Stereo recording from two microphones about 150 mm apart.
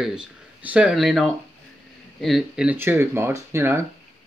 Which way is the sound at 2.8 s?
15° right (ahead or behind).